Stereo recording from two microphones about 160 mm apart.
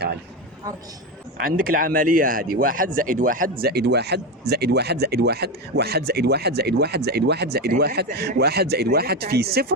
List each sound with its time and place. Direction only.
1.5 s speech: 65° right (ahead or behind); by 9.7 s 80° right